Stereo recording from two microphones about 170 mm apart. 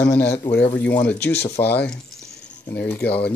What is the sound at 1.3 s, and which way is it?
Speech, 40° left (ahead or behind).